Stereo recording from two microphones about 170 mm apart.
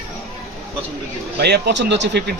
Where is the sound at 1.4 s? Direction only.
85° right.